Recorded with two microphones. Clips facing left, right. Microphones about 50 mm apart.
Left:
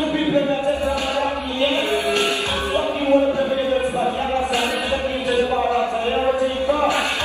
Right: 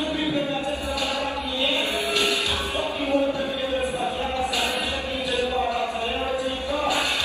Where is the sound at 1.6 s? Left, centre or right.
Left.